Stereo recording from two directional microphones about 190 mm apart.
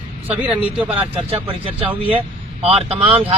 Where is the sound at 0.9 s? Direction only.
30° right (ahead or behind).